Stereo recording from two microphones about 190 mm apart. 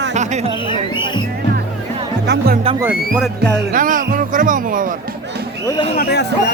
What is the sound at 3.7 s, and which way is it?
Speech, 45° right (ahead or behind).